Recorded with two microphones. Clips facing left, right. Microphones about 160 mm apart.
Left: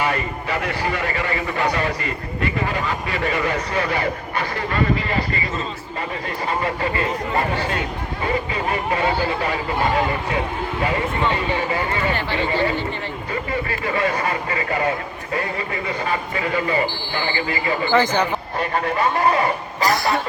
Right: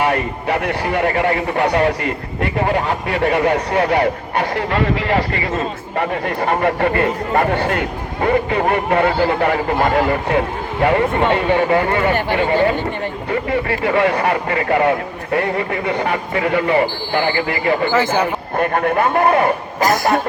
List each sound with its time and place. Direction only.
0.0 s speech: 60° right (ahead or behind); by 5.2 s 75° right (ahead or behind)
5.5 s speech: 60° right (ahead or behind)
13.5 s speech: 65° right (ahead or behind)
17.9 s speech: 5° right (ahead or behind)
18.5 s speech: 50° right (ahead or behind)